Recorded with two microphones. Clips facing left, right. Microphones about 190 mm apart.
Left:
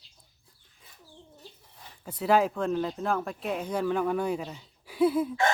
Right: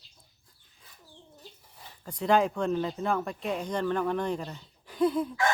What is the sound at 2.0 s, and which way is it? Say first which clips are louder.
Speech: left 1 dB; 5° left (ahead or behind).